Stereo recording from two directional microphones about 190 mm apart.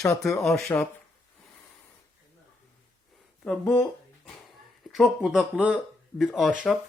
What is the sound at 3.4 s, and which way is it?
Speech, 10° left (ahead or behind).